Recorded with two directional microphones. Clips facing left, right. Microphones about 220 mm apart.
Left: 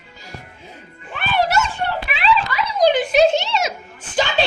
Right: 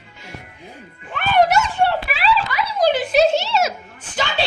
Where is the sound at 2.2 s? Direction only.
5° right (ahead or behind).